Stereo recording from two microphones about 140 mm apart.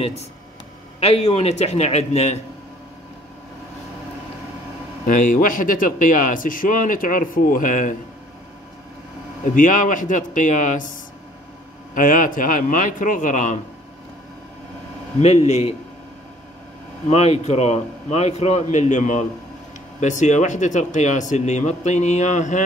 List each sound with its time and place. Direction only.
0.9 s a man's voice: 45° left (ahead or behind)
5.0 s speech: 70° left (ahead or behind)
9.4 s speech: 70° left (ahead or behind)
11.9 s speech: 70° left (ahead or behind)
15.1 s a man's voice: 50° left (ahead or behind)
17.1 s a man's voice: 50° left (ahead or behind)